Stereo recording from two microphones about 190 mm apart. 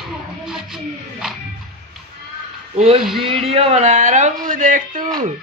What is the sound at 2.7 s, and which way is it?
Speech, 35° right (ahead or behind).